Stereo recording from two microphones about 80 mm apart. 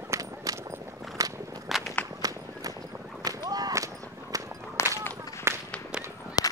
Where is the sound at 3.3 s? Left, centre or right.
Right.